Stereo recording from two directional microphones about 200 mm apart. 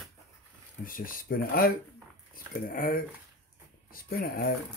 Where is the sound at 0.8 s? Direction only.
45° left (ahead or behind).